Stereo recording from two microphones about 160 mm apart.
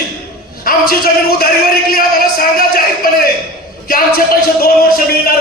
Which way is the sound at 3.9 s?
65° left (ahead or behind).